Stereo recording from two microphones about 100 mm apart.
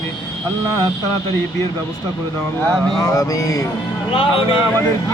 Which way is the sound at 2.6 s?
5° left (ahead or behind).